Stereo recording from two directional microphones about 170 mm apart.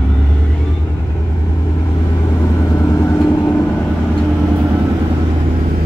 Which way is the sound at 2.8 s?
15° left (ahead or behind).